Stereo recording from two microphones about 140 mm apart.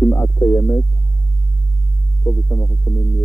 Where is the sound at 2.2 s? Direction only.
20° left (ahead or behind).